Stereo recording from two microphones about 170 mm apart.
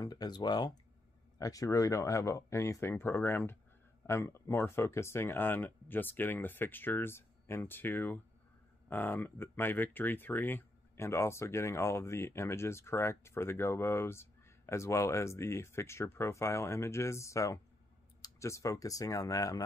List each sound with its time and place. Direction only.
0.0 s speech: 20° left (ahead or behind)